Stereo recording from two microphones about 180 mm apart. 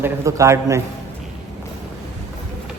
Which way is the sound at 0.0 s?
15° right (ahead or behind).